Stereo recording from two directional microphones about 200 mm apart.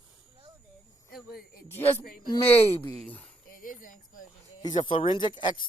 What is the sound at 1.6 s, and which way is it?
Speech, 10° left (ahead or behind).